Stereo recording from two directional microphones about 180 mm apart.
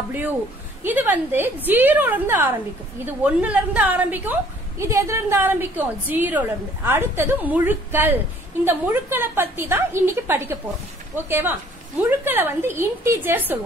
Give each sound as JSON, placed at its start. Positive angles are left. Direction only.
{"t": 0.8, "sound": "a woman's voice", "side_deg": -10}